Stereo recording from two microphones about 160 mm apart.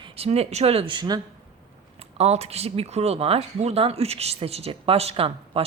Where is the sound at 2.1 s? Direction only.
40° right (ahead or behind).